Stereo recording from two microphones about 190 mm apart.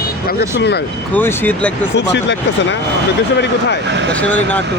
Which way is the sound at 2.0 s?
70° left (ahead or behind).